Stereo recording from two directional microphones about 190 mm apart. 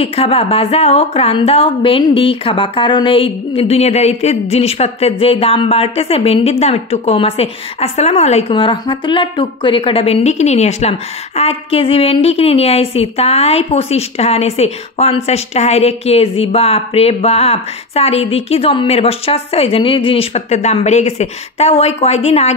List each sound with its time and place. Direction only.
0.0 s a woman's voice: 30° left (ahead or behind)